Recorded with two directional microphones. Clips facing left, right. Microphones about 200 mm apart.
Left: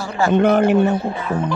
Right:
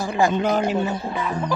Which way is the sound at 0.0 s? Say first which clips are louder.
Even; 15° right (ahead or behind).